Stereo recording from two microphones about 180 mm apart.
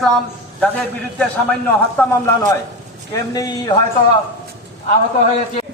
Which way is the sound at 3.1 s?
20° left (ahead or behind).